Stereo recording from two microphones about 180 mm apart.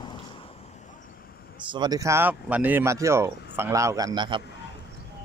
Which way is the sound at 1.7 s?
25° right (ahead or behind).